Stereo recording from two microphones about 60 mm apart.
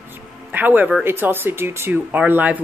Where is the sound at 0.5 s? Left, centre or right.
Right.